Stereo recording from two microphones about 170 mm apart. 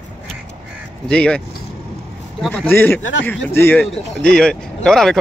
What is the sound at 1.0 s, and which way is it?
Speech, 5° left (ahead or behind).